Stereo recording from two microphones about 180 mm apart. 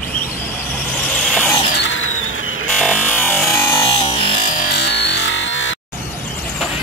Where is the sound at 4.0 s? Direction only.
30° left (ahead or behind).